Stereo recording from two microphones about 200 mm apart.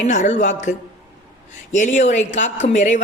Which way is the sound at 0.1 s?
40° left (ahead or behind).